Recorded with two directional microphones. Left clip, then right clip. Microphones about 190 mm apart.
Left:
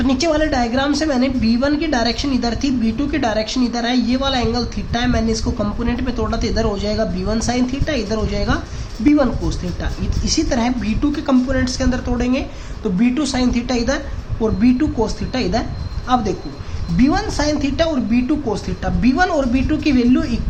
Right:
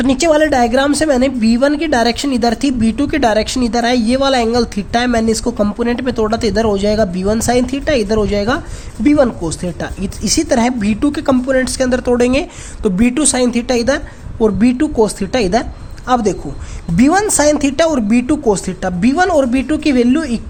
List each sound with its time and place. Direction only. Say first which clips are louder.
0.0 s a woman's voice: right 5 dB; 45° right (ahead or behind)